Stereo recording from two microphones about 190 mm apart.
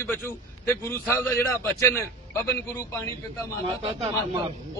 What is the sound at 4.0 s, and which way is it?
Speech, 30° right (ahead or behind).